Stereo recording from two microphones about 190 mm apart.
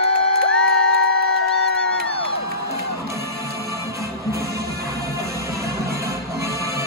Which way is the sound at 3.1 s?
15° right (ahead or behind).